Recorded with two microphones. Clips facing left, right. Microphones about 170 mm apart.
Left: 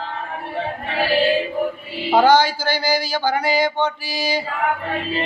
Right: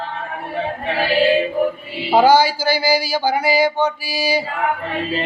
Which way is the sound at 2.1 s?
10° right (ahead or behind).